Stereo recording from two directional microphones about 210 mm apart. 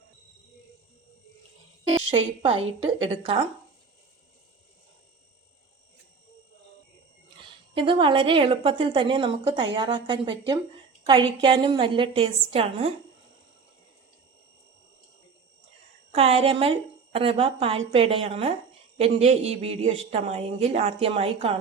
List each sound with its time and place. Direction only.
2.0 s a woman's voice: 25° right (ahead or behind)
7.8 s a woman's voice: 25° right (ahead or behind)
16.1 s a woman's voice: 30° right (ahead or behind)